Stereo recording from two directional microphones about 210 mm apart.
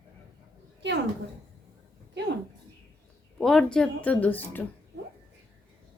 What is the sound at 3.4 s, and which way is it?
Speech, 5° left (ahead or behind).